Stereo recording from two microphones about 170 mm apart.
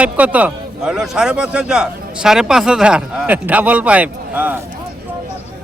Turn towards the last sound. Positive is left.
turn(degrees=-10)  # may be behind; listen again after turning